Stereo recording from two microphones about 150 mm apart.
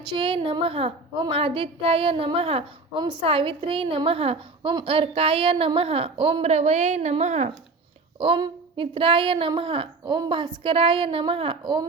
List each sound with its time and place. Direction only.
0.2 s a woman's voice: 35° right (ahead or behind)
8.2 s a woman's voice: 35° right (ahead or behind)